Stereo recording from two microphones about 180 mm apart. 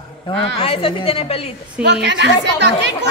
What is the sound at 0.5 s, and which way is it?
Speech, 30° left (ahead or behind).